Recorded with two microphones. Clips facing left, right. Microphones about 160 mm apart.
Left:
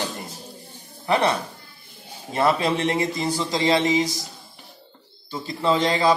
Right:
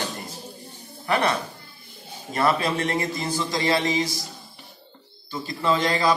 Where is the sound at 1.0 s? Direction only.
25° left (ahead or behind).